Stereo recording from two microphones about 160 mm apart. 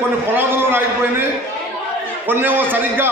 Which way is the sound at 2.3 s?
10° right (ahead or behind).